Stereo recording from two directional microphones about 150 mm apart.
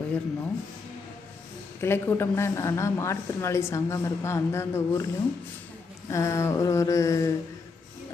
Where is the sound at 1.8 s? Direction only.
15° left (ahead or behind).